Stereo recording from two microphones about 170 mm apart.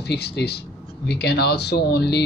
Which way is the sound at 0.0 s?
75° left (ahead or behind).